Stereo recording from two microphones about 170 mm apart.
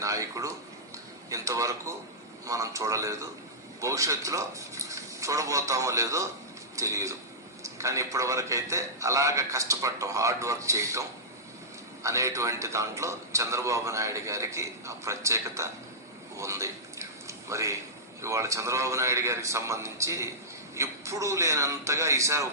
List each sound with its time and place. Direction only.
0.0 s a man's voice: 20° right (ahead or behind)
12.0 s a man's voice: 20° right (ahead or behind)
16.4 s a sound: 15° right (ahead or behind)
18.2 s a man's voice: 15° right (ahead or behind)